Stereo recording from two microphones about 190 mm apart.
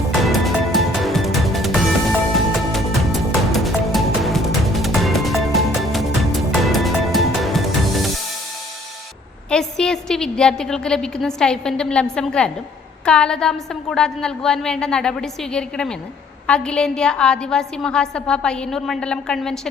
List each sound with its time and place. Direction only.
0.2 s music: centre (ahead or behind)
9.5 s a woman's voice: 5° left (ahead or behind)